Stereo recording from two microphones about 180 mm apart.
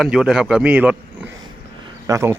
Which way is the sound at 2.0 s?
15° right (ahead or behind).